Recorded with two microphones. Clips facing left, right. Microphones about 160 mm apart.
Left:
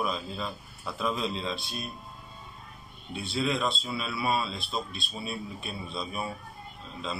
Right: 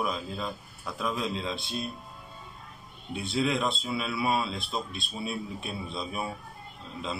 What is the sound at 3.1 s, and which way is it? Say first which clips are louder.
A man's voice: right 2 dB; 20° right (ahead or behind).